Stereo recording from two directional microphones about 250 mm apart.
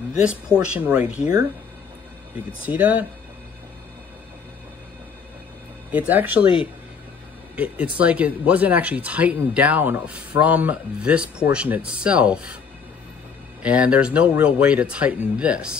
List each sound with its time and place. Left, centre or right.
0.1 s speech: centre
2.6 s speech: centre
5.9 s speech: centre
6.4 s speech: left
7.5 s speech: centre
13.6 s speech: centre